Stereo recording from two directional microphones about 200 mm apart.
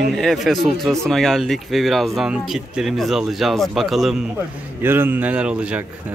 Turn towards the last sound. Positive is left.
turn(degrees=-10)  # may be behind; listen again after turning